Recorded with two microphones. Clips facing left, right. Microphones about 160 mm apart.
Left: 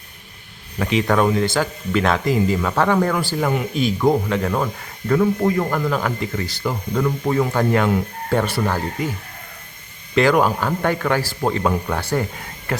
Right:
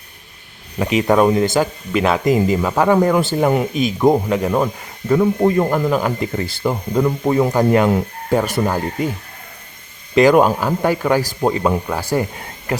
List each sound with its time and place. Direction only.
0.8 s speech: 15° right (ahead or behind)
5.4 s speech: 30° right (ahead or behind)
10.2 s speech: 20° right (ahead or behind)